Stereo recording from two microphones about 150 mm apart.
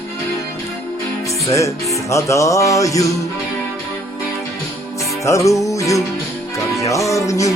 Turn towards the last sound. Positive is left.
turn(degrees=20)  # may be behind; listen again after turning